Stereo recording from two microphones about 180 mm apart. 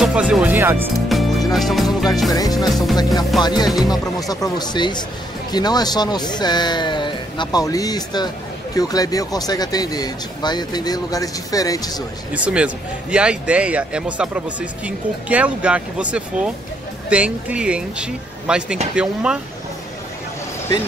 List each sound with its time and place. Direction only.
0.0 s a man's voice: 5° right (ahead or behind)
1.0 s music: centre (ahead or behind)
2.3 s speech: 20° left (ahead or behind)
2.6 s speech: centre (ahead or behind)
3.3 s speech: 25° left (ahead or behind)
12.4 s a man's voice: 5° right (ahead or behind)